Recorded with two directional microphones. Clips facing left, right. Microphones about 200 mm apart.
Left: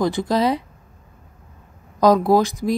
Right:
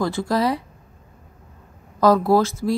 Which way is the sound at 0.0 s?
20° left (ahead or behind).